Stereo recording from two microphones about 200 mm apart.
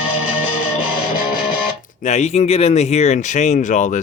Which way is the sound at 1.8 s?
35° left (ahead or behind).